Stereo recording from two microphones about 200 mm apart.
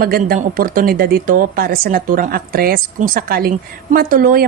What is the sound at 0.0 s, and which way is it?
A woman's voice, 45° right (ahead or behind).